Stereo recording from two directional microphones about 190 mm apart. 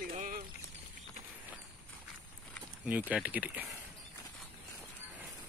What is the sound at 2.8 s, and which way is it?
Speech, 10° right (ahead or behind).